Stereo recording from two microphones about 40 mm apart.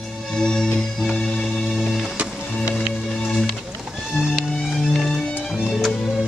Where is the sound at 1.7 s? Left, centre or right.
Centre.